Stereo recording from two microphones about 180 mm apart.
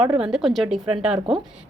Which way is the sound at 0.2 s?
Centre (ahead or behind).